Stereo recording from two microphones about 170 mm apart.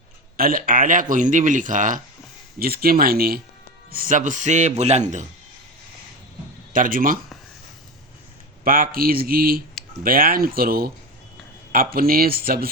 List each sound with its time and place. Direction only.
0.3 s speech: 60° right (ahead or behind)
2.6 s speech: 60° right (ahead or behind); by 5.2 s 40° right (ahead or behind)
6.7 s speech: 55° right (ahead or behind)
8.6 s speech: 55° right (ahead or behind)